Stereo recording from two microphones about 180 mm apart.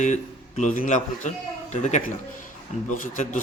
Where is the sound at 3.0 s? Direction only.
45° left (ahead or behind).